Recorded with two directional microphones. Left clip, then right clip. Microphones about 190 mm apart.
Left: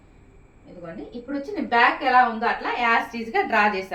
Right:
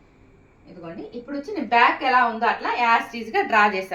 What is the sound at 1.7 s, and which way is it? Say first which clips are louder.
A woman's voice: right 1 dB; 35° right (ahead or behind).